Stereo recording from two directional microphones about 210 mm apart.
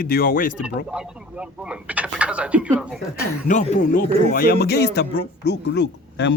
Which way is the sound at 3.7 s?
40° left (ahead or behind).